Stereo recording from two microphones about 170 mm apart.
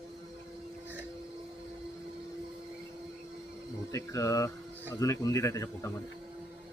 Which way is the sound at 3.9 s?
20° left (ahead or behind).